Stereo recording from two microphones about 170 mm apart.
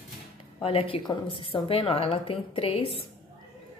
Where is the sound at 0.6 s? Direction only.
35° left (ahead or behind).